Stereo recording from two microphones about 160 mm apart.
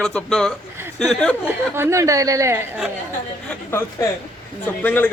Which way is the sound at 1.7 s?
15° right (ahead or behind).